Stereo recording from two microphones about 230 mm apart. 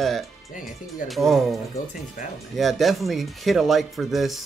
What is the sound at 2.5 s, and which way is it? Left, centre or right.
Speech, centre.